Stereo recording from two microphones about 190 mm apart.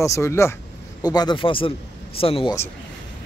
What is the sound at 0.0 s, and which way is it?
Speech, 15° left (ahead or behind).